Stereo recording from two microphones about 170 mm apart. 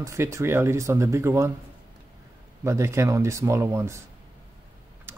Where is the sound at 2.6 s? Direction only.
15° right (ahead or behind).